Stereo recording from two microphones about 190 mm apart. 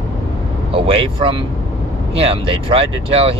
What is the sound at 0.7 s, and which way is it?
Speech, 30° right (ahead or behind).